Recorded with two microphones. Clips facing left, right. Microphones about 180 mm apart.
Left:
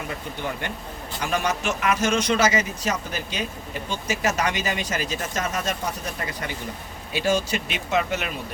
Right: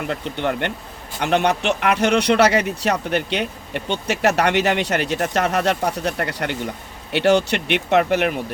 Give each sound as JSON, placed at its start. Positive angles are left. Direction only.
{"t": 0.1, "sound": "a man's voice", "side_deg": -70}